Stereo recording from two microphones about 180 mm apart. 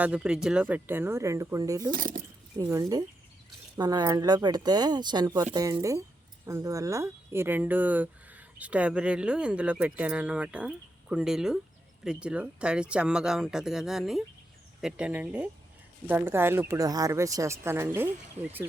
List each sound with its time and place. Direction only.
0.0 s speech: 5° right (ahead or behind)
1.9 s speech: 50° right (ahead or behind)
2.6 s speech: 20° right (ahead or behind)